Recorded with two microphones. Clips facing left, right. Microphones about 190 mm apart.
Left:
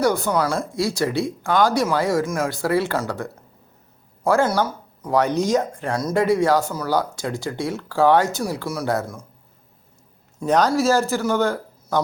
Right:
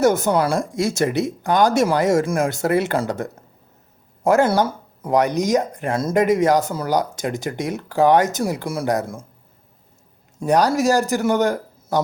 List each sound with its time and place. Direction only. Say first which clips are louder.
0.3 s speech: right 3 dB; 20° right (ahead or behind)
4.4 s speech: right 3 dB; 30° right (ahead or behind)
10.4 s a man's voice: right 1 dB; 15° right (ahead or behind)